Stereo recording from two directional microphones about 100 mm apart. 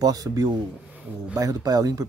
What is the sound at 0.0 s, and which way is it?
Speech, 40° right (ahead or behind).